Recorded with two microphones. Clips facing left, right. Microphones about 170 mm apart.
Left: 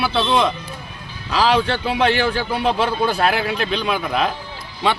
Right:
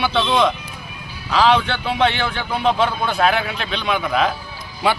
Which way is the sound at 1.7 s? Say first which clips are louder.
Left 1 dB; 35° left (ahead or behind).